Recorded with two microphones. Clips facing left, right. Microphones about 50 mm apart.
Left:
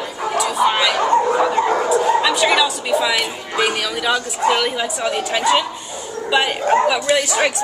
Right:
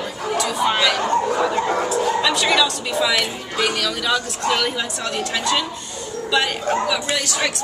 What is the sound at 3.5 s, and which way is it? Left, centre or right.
A woman's voice, centre.